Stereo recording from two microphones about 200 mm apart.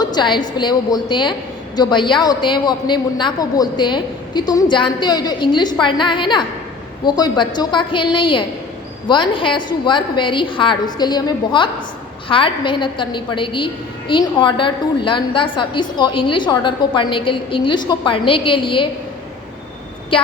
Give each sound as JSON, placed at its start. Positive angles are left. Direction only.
{"t": 0.0, "sound": "a woman's voice", "side_deg": 20}
{"t": 20.1, "sound": "a woman's voice", "side_deg": 25}